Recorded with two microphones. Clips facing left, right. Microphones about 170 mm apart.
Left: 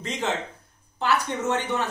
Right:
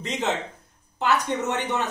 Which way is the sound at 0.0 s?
20° right (ahead or behind).